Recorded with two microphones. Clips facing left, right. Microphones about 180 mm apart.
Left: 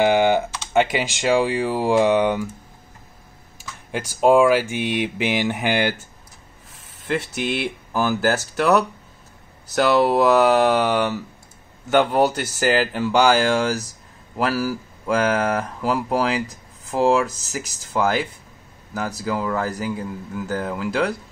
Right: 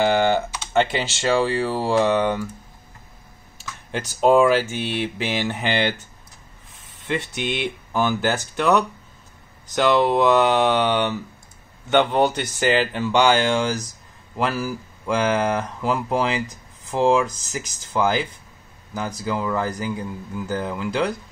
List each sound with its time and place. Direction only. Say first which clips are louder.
0.0 s speech: left 2 dB; 15° left (ahead or behind)
3.5 s speech: even; 10° left (ahead or behind)
7.1 s speech: left 2 dB; 5° left (ahead or behind)